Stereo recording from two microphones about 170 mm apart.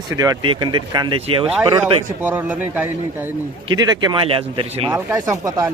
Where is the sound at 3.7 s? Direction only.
25° right (ahead or behind).